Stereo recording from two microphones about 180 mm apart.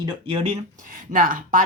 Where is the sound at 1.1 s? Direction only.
50° right (ahead or behind).